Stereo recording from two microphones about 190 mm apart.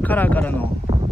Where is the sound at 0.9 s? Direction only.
35° right (ahead or behind).